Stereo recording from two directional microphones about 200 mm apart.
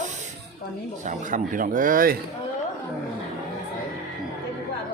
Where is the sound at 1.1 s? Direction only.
40° right (ahead or behind).